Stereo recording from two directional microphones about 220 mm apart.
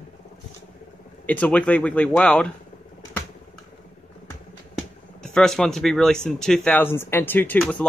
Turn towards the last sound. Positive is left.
turn(degrees=5)  # may be behind; listen again after turning